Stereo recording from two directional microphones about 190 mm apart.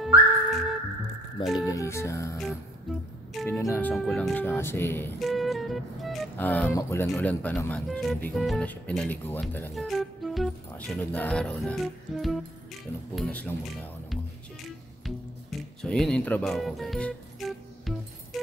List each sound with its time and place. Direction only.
0.0 s music: centre (ahead or behind)
1.4 s speech: centre (ahead or behind)
1.7 s speech: 15° left (ahead or behind)
3.4 s speech: 10° left (ahead or behind)
5.2 s speech: centre (ahead or behind)
15.8 s speech: 5° left (ahead or behind)